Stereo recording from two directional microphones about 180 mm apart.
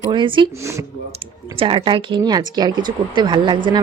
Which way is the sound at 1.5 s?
30° right (ahead or behind).